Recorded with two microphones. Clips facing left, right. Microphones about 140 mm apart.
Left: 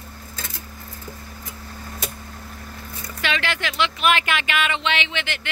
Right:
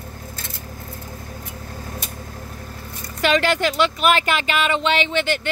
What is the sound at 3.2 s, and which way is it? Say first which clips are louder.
Speech: right 8 dB; 40° right (ahead or behind).